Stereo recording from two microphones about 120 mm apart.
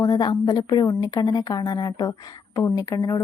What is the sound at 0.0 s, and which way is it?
A woman's voice, 35° left (ahead or behind).